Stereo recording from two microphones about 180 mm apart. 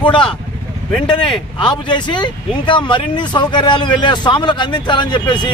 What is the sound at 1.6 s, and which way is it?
Speech, 25° left (ahead or behind).